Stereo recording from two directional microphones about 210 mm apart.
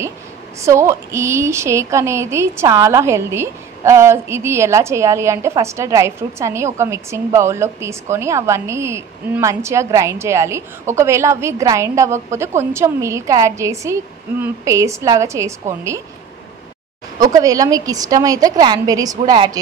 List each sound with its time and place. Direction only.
0.6 s a woman's voice: 15° right (ahead or behind)
17.2 s a woman's voice: 15° right (ahead or behind)